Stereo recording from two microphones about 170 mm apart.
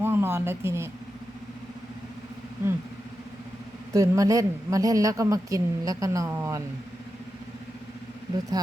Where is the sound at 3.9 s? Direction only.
20° right (ahead or behind).